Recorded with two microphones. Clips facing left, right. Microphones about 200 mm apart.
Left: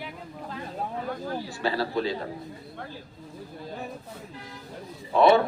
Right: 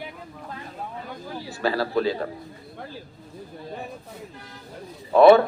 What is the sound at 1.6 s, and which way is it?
Speech, 40° right (ahead or behind).